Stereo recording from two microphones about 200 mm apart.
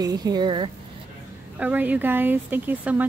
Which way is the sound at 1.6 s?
10° right (ahead or behind).